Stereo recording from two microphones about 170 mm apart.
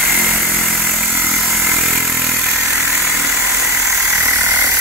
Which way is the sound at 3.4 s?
15° right (ahead or behind).